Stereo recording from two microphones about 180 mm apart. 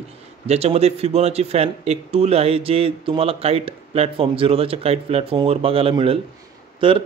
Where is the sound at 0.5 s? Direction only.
35° right (ahead or behind).